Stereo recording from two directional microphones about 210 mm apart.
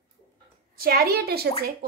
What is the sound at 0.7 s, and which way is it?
Speech, 45° right (ahead or behind).